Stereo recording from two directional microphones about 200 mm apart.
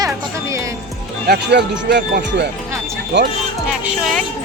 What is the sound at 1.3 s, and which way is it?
Speech, 55° right (ahead or behind).